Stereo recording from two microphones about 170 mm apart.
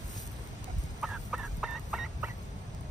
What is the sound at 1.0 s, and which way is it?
Chicken, centre (ahead or behind).